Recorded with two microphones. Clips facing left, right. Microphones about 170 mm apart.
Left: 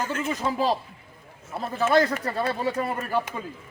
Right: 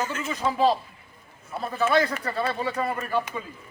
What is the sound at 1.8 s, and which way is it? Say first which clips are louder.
Speech: left 2 dB; 45° left (ahead or behind).